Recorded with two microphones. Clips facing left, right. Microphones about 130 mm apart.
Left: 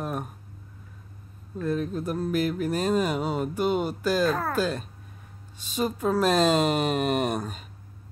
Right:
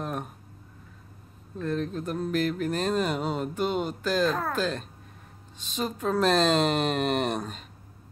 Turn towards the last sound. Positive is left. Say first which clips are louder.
# left 1 dB
turn(degrees=5)  # may be behind; listen again after turning